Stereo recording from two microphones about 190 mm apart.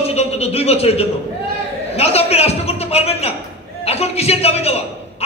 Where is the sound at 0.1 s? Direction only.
35° left (ahead or behind).